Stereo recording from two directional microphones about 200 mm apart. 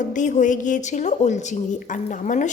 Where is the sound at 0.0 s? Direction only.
40° left (ahead or behind).